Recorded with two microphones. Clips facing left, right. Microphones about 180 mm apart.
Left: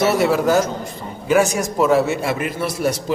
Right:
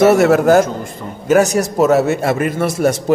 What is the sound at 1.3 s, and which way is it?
A man's voice, 40° right (ahead or behind).